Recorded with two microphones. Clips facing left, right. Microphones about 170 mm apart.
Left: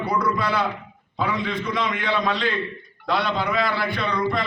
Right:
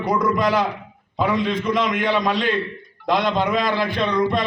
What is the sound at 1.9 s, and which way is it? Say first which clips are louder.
A man's voice: right 3 dB; 15° right (ahead or behind).